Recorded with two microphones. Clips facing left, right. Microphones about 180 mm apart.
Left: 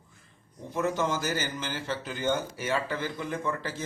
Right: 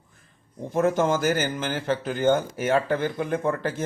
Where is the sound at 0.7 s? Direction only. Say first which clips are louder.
Right 7 dB; 50° right (ahead or behind).